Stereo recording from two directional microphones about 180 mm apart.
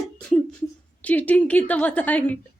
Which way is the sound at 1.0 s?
10° left (ahead or behind).